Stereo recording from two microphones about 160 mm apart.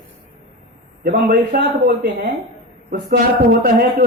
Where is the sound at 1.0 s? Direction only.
70° right (ahead or behind).